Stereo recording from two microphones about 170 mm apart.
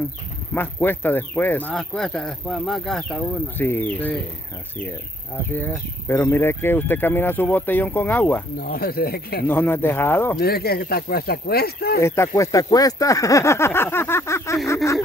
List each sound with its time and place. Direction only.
0.6 s speech: 10° left (ahead or behind)
5.5 s speech: 10° left (ahead or behind)
8.5 s speech: 60° left (ahead or behind)
9.5 s speech: 10° left (ahead or behind)
10.4 s speech: 65° left (ahead or behind)
12.0 s speech: 15° left (ahead or behind)